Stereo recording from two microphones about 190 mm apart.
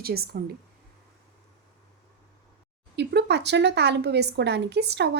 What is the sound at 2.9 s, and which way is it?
A woman's voice, 60° right (ahead or behind).